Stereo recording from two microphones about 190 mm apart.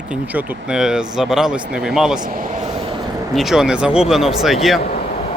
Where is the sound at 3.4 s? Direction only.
Centre (ahead or behind).